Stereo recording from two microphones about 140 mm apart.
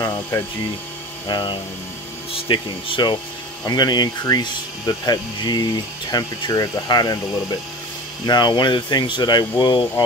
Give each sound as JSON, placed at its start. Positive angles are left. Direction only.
{"t": 0.3, "sound": "speech", "side_deg": 25}
{"t": 1.2, "sound": "speech", "side_deg": 35}
{"t": 8.3, "sound": "speech", "side_deg": 30}